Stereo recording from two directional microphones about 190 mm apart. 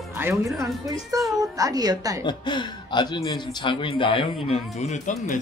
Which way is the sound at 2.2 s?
25° left (ahead or behind).